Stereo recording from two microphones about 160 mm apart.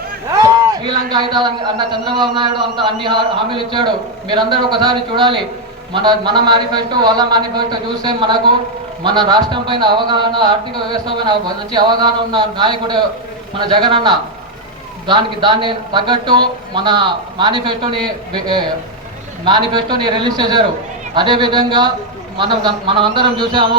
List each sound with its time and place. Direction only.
0.3 s a man's voice: 20° right (ahead or behind)